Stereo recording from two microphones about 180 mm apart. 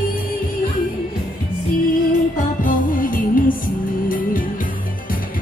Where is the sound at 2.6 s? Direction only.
50° left (ahead or behind).